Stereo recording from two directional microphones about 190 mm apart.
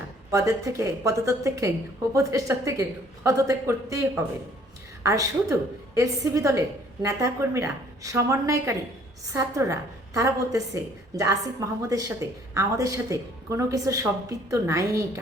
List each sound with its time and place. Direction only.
0.3 s a woman's voice: 15° right (ahead or behind)